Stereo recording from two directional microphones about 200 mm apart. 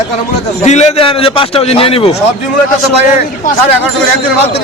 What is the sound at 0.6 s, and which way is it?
A man's voice, 35° left (ahead or behind).